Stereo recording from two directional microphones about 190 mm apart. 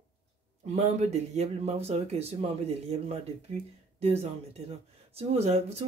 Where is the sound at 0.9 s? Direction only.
35° right (ahead or behind).